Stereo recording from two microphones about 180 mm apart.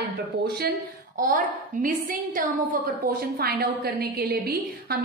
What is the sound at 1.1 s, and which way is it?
A woman's voice, 45° right (ahead or behind).